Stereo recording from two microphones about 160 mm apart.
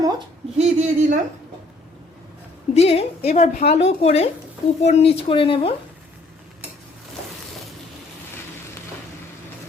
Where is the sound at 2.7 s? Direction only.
40° left (ahead or behind).